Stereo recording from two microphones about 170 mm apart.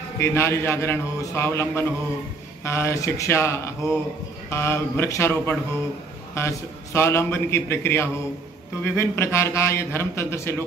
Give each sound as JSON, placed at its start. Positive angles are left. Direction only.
{"t": 0.2, "sound": "a man's voice", "side_deg": 15}